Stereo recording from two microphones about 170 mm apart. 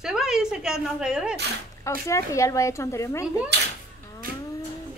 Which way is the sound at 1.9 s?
15° left (ahead or behind).